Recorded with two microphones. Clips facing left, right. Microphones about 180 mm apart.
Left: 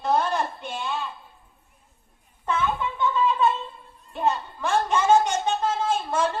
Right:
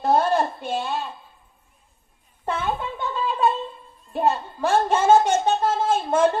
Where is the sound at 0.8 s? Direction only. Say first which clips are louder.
Right 3 dB; 35° right (ahead or behind).